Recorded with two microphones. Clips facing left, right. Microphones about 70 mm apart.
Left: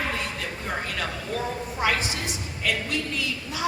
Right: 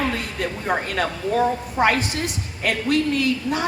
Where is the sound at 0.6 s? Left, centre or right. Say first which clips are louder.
Right 7 dB; right.